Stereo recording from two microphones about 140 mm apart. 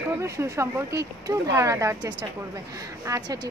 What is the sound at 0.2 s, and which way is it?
A woman's voice, 20° right (ahead or behind).